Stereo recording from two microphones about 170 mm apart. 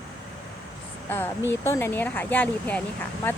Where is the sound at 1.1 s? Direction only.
15° left (ahead or behind).